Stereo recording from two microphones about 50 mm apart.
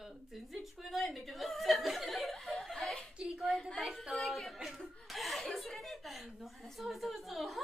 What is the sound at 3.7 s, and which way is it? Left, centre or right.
Speech, centre.